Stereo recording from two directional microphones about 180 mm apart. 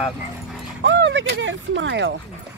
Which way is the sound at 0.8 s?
80° right.